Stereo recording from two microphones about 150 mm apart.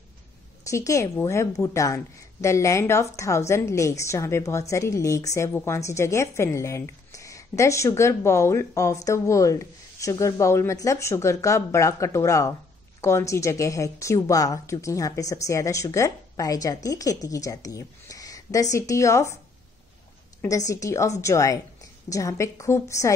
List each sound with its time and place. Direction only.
0.7 s a woman's voice: 20° left (ahead or behind)
20.4 s a woman's voice: 20° left (ahead or behind)